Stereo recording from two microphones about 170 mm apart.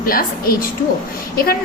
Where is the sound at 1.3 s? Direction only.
60° left (ahead or behind).